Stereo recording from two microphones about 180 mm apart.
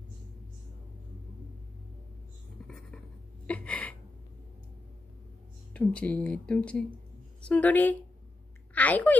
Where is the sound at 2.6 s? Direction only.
5° left (ahead or behind).